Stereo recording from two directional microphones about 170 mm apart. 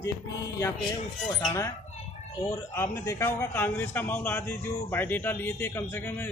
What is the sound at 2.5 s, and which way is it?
A man's voice, 15° left (ahead or behind).